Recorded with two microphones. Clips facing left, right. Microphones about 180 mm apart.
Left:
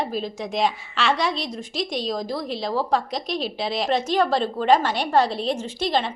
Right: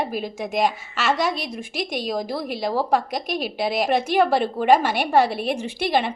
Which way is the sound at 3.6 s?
5° right (ahead or behind).